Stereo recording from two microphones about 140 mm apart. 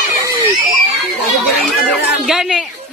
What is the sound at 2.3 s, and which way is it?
Speech, 5° right (ahead or behind).